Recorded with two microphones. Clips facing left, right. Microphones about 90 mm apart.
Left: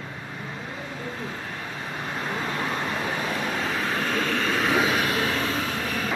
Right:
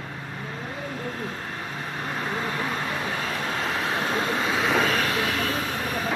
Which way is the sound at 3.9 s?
20° right (ahead or behind).